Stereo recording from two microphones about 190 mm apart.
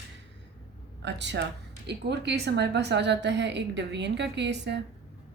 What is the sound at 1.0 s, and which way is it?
Speech, 65° right (ahead or behind).